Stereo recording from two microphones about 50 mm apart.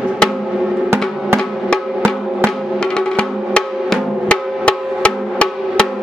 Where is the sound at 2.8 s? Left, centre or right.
Centre.